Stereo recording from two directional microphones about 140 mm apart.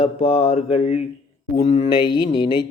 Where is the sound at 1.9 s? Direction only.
30° left (ahead or behind).